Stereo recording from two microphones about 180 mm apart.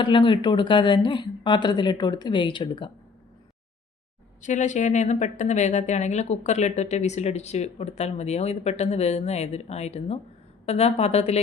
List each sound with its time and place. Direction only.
0.0 s speech: 25° left (ahead or behind)
4.4 s a woman's voice: 40° left (ahead or behind)